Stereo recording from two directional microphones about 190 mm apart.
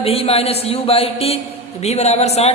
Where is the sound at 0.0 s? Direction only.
30° left (ahead or behind).